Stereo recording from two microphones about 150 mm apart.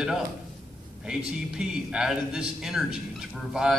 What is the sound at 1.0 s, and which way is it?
A man's voice, 5° right (ahead or behind).